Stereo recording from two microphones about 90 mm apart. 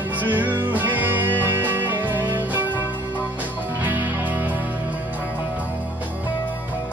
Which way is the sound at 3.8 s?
20° right (ahead or behind).